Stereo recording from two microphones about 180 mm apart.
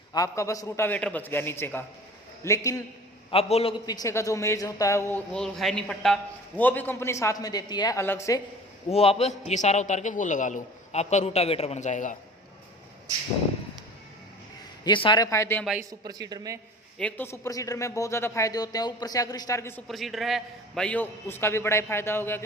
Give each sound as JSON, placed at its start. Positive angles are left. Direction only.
{"t": 0.1, "sound": "speech", "side_deg": 20}
{"t": 3.3, "sound": "a man's voice", "side_deg": 30}
{"t": 3.8, "sound": "speech", "side_deg": 20}
{"t": 5.3, "sound": "a man's voice", "side_deg": 0}
{"t": 8.9, "sound": "a man's voice", "side_deg": 35}
{"t": 14.8, "sound": "speech", "side_deg": 25}
{"t": 15.8, "sound": "a man's voice", "side_deg": -20}
{"t": 17.0, "sound": "speech", "side_deg": 10}
{"t": 19.9, "sound": "speech", "side_deg": 0}